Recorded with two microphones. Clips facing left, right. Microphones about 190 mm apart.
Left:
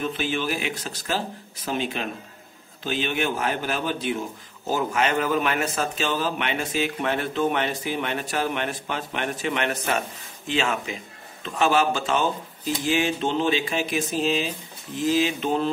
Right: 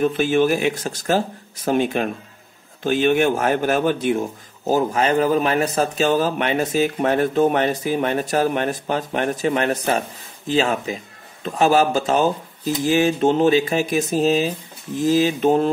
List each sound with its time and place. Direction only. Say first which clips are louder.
0.0 s speech: right 9 dB; 50° right (ahead or behind)
4.6 s a man's voice: right 5 dB; 40° right (ahead or behind)